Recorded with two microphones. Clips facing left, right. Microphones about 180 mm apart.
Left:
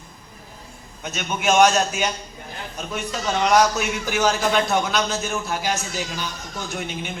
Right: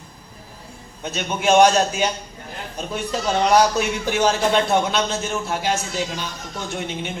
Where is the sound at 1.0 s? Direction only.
30° right (ahead or behind).